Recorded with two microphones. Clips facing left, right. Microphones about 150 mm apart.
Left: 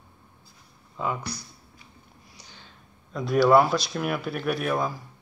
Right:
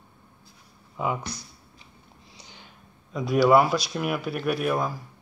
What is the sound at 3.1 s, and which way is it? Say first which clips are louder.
Speech: even; 5° right (ahead or behind).